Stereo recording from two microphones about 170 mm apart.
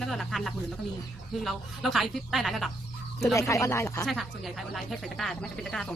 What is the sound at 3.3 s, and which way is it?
Speech, 20° left (ahead or behind).